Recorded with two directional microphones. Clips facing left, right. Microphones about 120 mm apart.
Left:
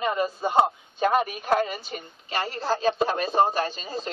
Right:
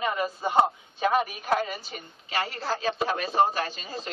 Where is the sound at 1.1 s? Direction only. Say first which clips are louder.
Left 2 dB; centre (ahead or behind).